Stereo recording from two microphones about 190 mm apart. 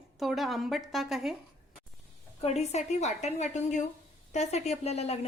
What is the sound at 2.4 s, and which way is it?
A woman's voice, 35° left (ahead or behind).